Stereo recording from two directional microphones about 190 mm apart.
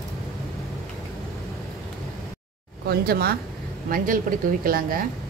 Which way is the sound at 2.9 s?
55° right (ahead or behind).